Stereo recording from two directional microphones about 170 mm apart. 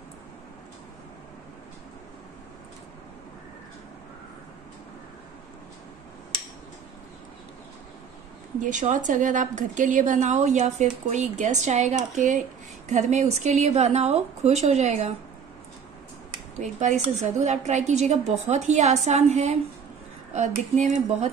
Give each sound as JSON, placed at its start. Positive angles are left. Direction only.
{"t": 8.5, "sound": "a woman's voice", "side_deg": -45}
{"t": 16.5, "sound": "a woman's voice", "side_deg": -45}